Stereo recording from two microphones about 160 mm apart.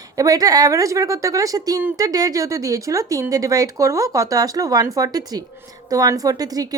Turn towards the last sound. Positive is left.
turn(degrees=-25)  # may be behind; listen again after turning